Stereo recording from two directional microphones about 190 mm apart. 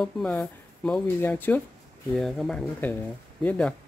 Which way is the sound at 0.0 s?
5° left (ahead or behind).